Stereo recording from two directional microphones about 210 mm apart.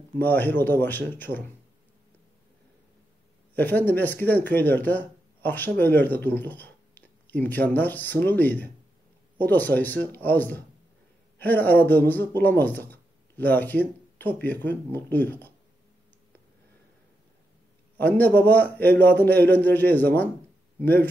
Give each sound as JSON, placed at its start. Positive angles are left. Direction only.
{"t": 0.2, "sound": "speech", "side_deg": 10}
{"t": 3.5, "sound": "speech", "side_deg": 10}
{"t": 17.9, "sound": "speech", "side_deg": 10}